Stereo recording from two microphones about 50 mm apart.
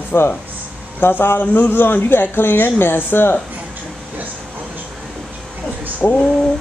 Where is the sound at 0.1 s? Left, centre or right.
Left.